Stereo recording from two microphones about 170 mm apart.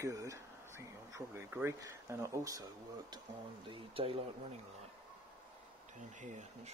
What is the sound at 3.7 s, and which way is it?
Speech, 35° right (ahead or behind).